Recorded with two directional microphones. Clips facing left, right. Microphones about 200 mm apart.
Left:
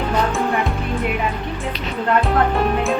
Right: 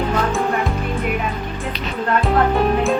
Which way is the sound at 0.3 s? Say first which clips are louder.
Even; centre (ahead or behind).